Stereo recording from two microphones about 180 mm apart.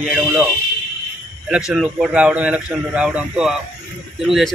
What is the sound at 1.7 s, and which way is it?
A man's voice, 5° right (ahead or behind).